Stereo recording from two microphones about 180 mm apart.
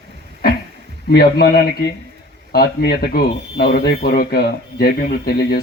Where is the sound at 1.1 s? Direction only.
60° left (ahead or behind).